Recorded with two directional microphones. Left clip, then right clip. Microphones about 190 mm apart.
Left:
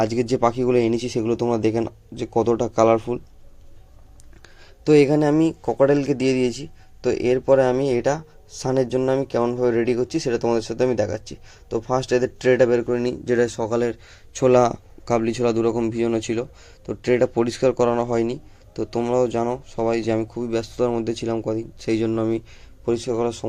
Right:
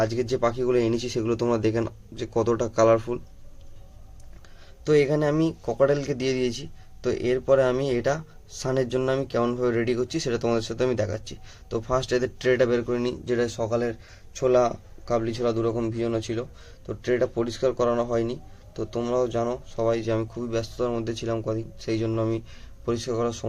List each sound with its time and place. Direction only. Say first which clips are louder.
0.0 s speech: left 4 dB; 30° left (ahead or behind)
4.4 s a sound: left 5 dB; 30° left (ahead or behind)
5.3 s a man's voice: left 5 dB; 15° left (ahead or behind)